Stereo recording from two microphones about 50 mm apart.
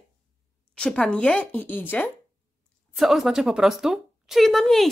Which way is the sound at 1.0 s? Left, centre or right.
Left.